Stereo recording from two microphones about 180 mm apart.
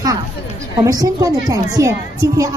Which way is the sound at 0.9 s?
20° right (ahead or behind).